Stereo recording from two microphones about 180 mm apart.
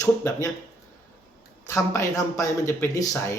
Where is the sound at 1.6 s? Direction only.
15° left (ahead or behind).